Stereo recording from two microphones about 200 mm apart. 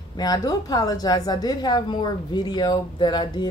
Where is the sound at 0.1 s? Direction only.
20° left (ahead or behind).